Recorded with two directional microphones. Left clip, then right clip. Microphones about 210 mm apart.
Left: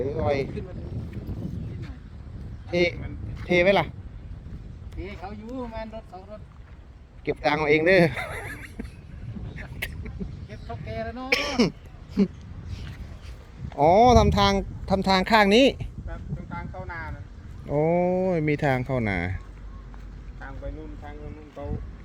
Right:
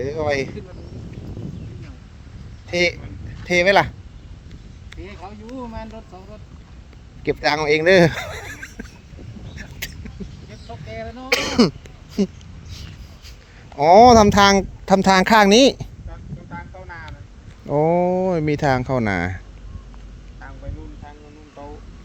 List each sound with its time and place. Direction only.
0.0 s speech: 40° right (ahead or behind)
0.5 s speech: centre (ahead or behind)
2.6 s speech: 40° right (ahead or behind)
4.9 s speech: centre (ahead or behind)
7.3 s speech: 40° right (ahead or behind)
9.8 s vehicle: 30° right (ahead or behind)
10.5 s a sound: centre (ahead or behind)
11.3 s speech: 40° right (ahead or behind)
13.7 s speech: 40° right (ahead or behind); by 15.9 s 25° right (ahead or behind)
16.0 s a sound: 30° left (ahead or behind)
17.7 s speech: 20° right (ahead or behind)